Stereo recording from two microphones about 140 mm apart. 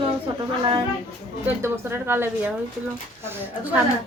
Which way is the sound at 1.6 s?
20° right (ahead or behind).